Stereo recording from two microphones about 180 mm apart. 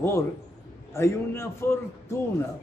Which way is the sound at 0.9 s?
15° left (ahead or behind).